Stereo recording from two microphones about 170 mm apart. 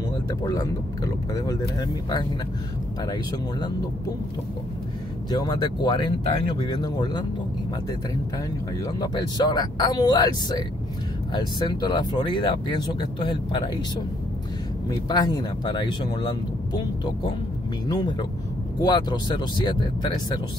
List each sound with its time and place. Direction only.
0.4 s speech: 20° left (ahead or behind)
5.3 s speech: 25° left (ahead or behind)
8.8 s speech: 25° left (ahead or behind)
14.9 s speech: 25° left (ahead or behind)